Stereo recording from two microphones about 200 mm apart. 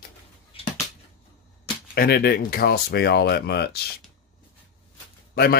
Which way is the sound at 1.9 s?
50° left (ahead or behind).